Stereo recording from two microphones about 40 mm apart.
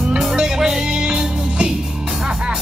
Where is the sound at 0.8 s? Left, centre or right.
Right.